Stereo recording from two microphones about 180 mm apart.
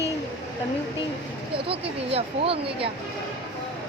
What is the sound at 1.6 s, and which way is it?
Speech, 35° right (ahead or behind).